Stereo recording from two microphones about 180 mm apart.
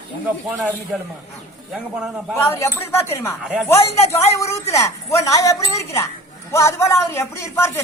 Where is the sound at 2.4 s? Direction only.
15° left (ahead or behind).